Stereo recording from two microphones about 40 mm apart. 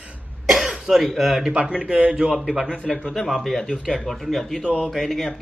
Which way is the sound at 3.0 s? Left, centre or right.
Centre.